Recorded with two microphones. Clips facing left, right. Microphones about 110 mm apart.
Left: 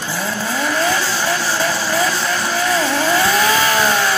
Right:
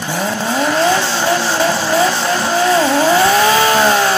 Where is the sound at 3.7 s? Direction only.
30° right (ahead or behind).